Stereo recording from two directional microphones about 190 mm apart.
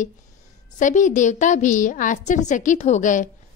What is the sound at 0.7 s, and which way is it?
Speech, 40° left (ahead or behind).